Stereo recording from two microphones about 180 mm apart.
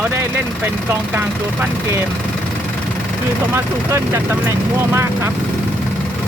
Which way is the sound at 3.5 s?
15° right (ahead or behind).